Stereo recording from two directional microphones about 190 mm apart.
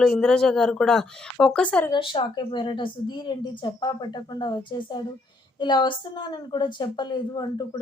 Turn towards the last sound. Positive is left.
turn(degrees=20)  # may be behind; listen again after turning